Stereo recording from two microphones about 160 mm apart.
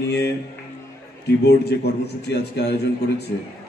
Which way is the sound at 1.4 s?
90° left.